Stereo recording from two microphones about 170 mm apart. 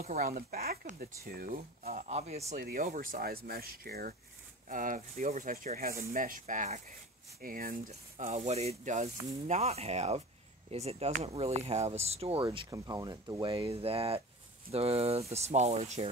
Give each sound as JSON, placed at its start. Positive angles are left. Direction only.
{"t": 0.0, "sound": "speech", "side_deg": -60}
{"t": 2.0, "sound": "speech", "side_deg": -40}
{"t": 2.5, "sound": "speech", "side_deg": -55}
{"t": 7.9, "sound": "speech", "side_deg": -45}
{"t": 12.6, "sound": "speech", "side_deg": -20}